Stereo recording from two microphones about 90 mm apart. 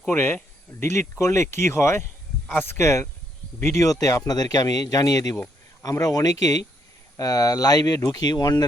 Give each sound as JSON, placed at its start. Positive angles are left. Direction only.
{"t": 0.1, "sound": "speech", "side_deg": 25}
{"t": 3.8, "sound": "speech", "side_deg": 40}